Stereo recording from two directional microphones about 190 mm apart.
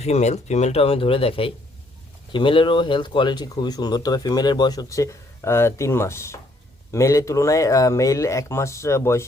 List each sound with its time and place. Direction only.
0.0 s speech: 35° left (ahead or behind); by 9.2 s 15° left (ahead or behind)